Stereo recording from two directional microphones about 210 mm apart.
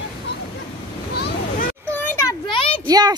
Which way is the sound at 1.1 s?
45° left (ahead or behind).